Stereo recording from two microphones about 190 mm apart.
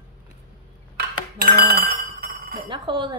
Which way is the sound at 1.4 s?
55° right (ahead or behind).